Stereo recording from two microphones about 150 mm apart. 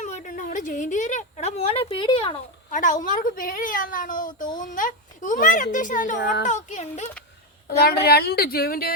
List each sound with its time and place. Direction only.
0.0 s a woman's voice: 55° left (ahead or behind); by 2.4 s 40° left (ahead or behind)
2.6 s speech: 60° left (ahead or behind)
7.8 s a woman's voice: 90° left